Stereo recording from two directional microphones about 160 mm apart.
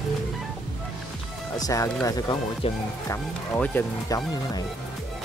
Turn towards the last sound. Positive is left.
turn(degrees=20)  # may be behind; listen again after turning